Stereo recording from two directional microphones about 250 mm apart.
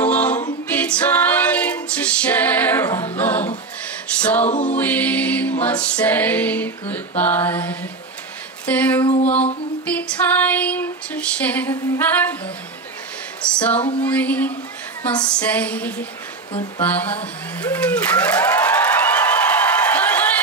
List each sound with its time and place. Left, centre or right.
0.0 s a capella: centre
4.1 s a sound: centre
4.5 s music: left
4.7 s music: centre
9.0 s music: left
9.8 s music: centre
13.6 s female singing: centre
14.0 s music: centre
16.8 s a sound: centre